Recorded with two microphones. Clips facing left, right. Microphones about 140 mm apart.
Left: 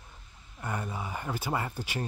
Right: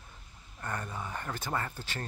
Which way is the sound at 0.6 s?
10° left (ahead or behind).